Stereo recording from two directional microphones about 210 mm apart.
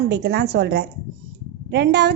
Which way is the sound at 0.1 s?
55° right (ahead or behind).